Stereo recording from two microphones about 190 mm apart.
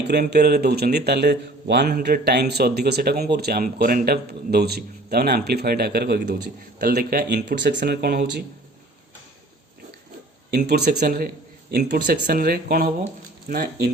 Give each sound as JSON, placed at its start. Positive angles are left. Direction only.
{"t": 0.1, "sound": "a man's voice", "side_deg": -60}
{"t": 10.5, "sound": "speech", "side_deg": -55}